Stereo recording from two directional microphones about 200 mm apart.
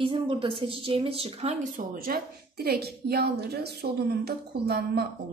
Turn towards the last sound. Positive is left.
turn(degrees=-55)  # may be behind; listen again after turning